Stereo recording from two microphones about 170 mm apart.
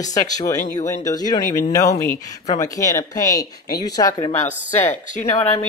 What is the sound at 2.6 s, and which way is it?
Speech, 20° left (ahead or behind).